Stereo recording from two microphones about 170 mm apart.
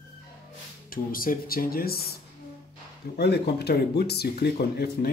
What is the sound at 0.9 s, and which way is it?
Speech, 55° left (ahead or behind).